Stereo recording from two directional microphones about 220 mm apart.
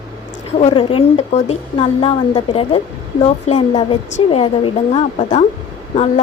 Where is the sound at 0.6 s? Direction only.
25° left (ahead or behind).